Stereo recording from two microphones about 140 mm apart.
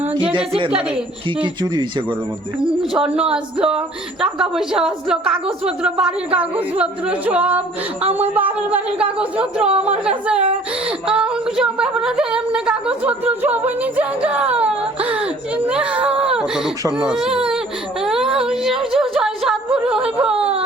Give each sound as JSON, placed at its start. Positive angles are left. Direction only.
{"t": 0.2, "sound": "a woman's voice", "side_deg": -10}
{"t": 1.4, "sound": "speech", "side_deg": -35}
{"t": 2.9, "sound": "a woman's voice", "side_deg": -5}
{"t": 18.0, "sound": "a sound", "side_deg": -5}
{"t": 19.2, "sound": "music", "side_deg": -5}